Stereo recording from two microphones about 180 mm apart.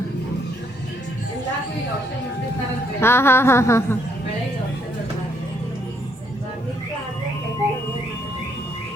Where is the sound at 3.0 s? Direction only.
15° left (ahead or behind).